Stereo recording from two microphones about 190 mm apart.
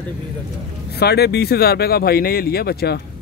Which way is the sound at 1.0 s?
60° left (ahead or behind).